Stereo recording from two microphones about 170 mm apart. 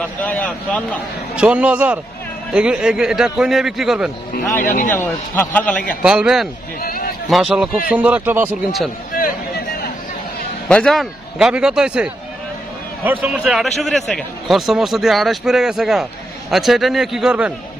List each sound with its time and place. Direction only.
0.0 s a man's voice: 10° left (ahead or behind)
1.3 s a man's voice: 5° right (ahead or behind)
4.6 s speech: 55° left (ahead or behind)
4.9 s a man's voice: 15° left (ahead or behind)
6.0 s speech: 5° right (ahead or behind)
6.8 s a sound: 60° left (ahead or behind)
7.2 s a man's voice: centre (ahead or behind)
10.7 s speech: 5° left (ahead or behind)